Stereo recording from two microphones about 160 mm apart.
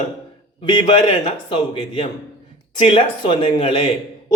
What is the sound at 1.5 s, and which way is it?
A man's voice, 30° left (ahead or behind).